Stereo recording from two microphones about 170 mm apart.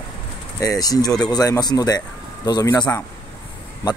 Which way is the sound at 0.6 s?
20° left (ahead or behind).